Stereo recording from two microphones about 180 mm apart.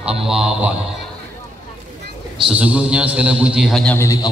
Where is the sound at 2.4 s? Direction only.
5° right (ahead or behind).